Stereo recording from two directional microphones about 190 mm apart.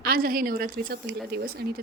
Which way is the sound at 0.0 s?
50° right (ahead or behind).